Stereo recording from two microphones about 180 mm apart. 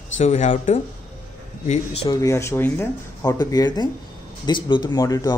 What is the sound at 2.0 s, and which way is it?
Speech, 20° left (ahead or behind).